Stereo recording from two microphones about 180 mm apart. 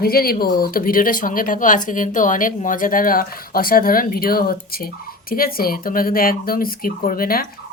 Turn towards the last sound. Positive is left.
turn(degrees=55)  # may be behind; listen again after turning